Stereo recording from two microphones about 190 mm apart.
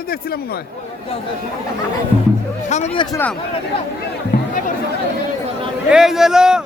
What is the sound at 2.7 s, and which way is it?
Speech, 35° left (ahead or behind).